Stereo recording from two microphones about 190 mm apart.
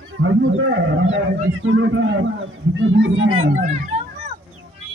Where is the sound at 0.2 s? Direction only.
80° right.